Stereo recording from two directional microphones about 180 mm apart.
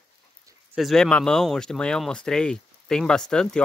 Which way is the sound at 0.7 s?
Centre (ahead or behind).